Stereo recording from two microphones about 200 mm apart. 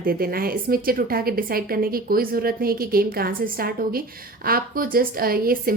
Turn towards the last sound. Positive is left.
turn(degrees=-45)  # may be behind; listen again after turning